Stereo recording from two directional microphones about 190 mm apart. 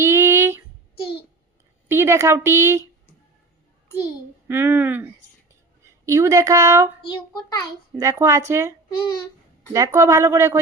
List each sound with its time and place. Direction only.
0.0 s a sound: 15° right (ahead or behind)
1.9 s a woman's voice: 15° right (ahead or behind)
4.4 s a woman's voice: 10° right (ahead or behind)
7.0 s a child's voice: 25° left (ahead or behind)
7.9 s a woman's voice: 15° right (ahead or behind)
9.7 s a woman's voice: 15° right (ahead or behind)